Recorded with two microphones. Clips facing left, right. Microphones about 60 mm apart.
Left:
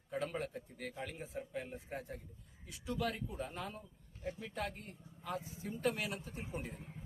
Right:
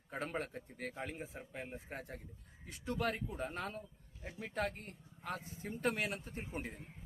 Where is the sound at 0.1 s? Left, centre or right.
Right.